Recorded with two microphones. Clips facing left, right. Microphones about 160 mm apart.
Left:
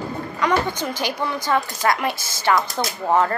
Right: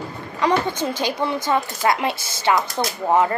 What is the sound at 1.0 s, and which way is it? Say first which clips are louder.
Speech: right 2 dB; 25° right (ahead or behind).